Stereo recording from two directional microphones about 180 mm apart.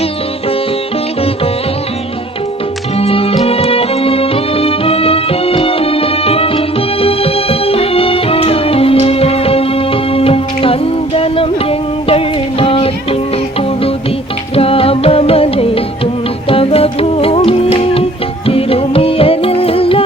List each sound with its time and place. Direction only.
3.0 s music: 30° left (ahead or behind)
14.5 s music: 30° left (ahead or behind)